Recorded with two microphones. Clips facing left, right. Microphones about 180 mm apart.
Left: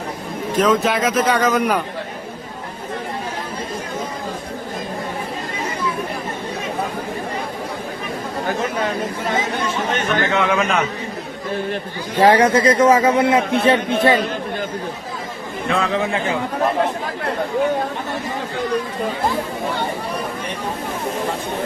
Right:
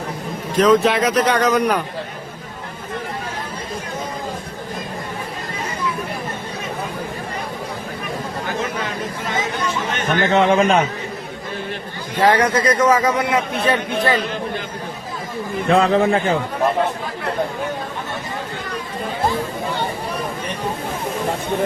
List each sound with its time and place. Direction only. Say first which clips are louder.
0.6 s speech: right 3 dB; centre (ahead or behind)
10.1 s a man's voice: right 5 dB; 35° right (ahead or behind)
12.1 s speech: left 3 dB; 10° left (ahead or behind)
12.5 s speech: left 3 dB; 25° left (ahead or behind)
15.7 s a man's voice: right 5 dB; 35° right (ahead or behind)